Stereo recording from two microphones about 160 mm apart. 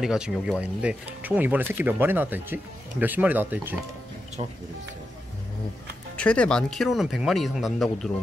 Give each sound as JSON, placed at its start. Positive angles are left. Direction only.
{"t": 0.0, "sound": "speech", "side_deg": -5}
{"t": 4.4, "sound": "speech", "side_deg": -35}
{"t": 6.1, "sound": "speech", "side_deg": 5}